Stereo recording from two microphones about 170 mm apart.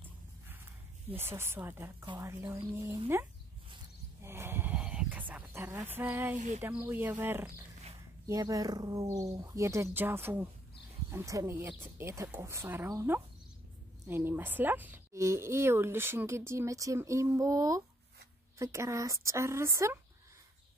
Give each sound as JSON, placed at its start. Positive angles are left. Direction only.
{"t": 1.1, "sound": "speech", "side_deg": -15}
{"t": 4.2, "sound": "a sound", "side_deg": -15}
{"t": 5.3, "sound": "speech", "side_deg": -10}